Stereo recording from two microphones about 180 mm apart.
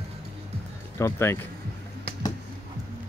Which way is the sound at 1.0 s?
15° left (ahead or behind).